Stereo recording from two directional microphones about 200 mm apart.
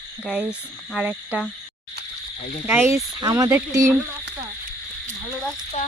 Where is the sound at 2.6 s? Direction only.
10° right (ahead or behind).